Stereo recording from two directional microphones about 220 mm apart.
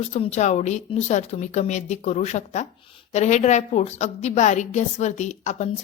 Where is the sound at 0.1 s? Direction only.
30° left (ahead or behind).